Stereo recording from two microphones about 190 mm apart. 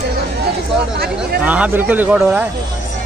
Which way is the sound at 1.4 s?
10° right (ahead or behind).